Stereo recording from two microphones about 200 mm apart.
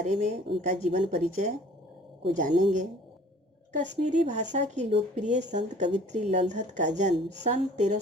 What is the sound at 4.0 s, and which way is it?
A woman's voice, 35° right (ahead or behind).